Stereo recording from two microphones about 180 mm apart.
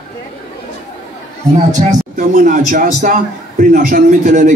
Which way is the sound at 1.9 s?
50° right (ahead or behind).